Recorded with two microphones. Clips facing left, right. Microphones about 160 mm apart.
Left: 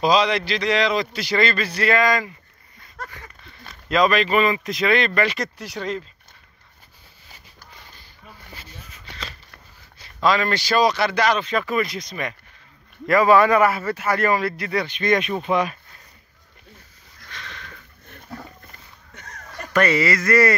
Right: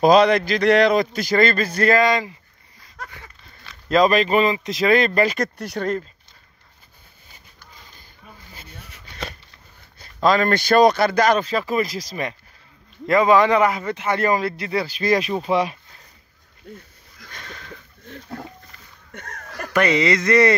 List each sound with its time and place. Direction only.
0.0 s a man's voice: 55° right (ahead or behind)
2.0 s a man's voice: 25° right (ahead or behind)
3.0 s a sound: centre (ahead or behind)
3.9 s speech: 40° right (ahead or behind)
4.5 s a man's voice: 25° right (ahead or behind)
4.8 s a man's voice: 40° right (ahead or behind)
8.5 s a sound: 65° right (ahead or behind)
9.9 s a man's voice: 45° right (ahead or behind)
11.5 s speech: 30° right (ahead or behind)
13.0 s a man's voice: 20° right (ahead or behind)
19.1 s a sound: 55° right (ahead or behind)
19.7 s a man's voice: 15° right (ahead or behind)